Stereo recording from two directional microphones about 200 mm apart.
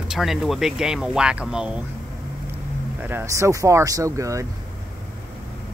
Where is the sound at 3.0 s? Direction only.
10° right (ahead or behind).